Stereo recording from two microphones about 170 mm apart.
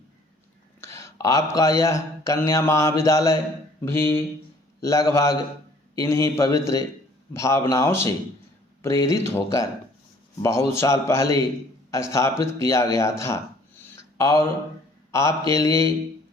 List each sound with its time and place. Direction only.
0.8 s a man's voice: 15° left (ahead or behind)